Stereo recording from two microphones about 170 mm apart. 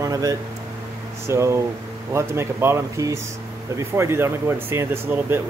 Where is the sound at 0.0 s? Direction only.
20° right (ahead or behind).